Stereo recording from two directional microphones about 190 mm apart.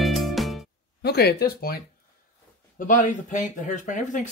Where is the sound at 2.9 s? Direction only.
40° left (ahead or behind).